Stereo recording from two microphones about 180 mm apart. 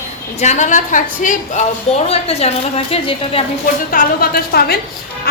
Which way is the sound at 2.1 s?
35° left (ahead or behind).